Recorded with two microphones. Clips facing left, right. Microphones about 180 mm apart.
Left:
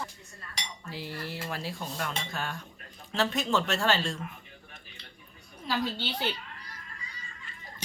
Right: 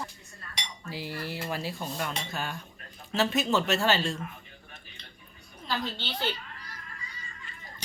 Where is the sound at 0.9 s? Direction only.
5° right (ahead or behind).